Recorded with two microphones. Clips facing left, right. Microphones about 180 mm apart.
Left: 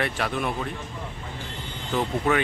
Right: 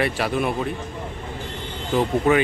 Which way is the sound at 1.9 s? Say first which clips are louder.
Right 5 dB; 15° right (ahead or behind).